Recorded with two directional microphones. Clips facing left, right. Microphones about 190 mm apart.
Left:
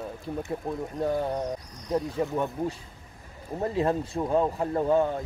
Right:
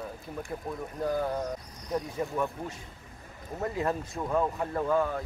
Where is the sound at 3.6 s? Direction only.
25° left (ahead or behind).